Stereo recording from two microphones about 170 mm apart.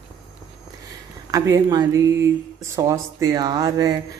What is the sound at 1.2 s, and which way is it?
Speech, 20° right (ahead or behind).